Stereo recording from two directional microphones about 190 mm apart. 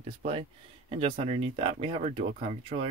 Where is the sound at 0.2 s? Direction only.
35° right (ahead or behind).